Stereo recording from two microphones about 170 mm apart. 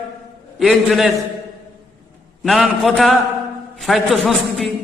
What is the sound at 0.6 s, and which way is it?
Speech, centre (ahead or behind).